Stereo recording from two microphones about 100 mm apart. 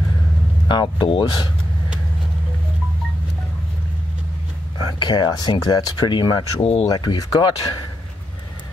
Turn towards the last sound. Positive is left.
turn(degrees=40)  # may be behind; listen again after turning